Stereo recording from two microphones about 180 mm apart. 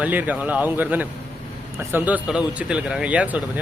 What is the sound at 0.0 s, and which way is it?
Speech, 10° right (ahead or behind).